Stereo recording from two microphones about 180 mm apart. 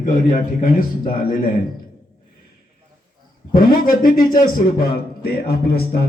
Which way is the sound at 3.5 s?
55° left (ahead or behind).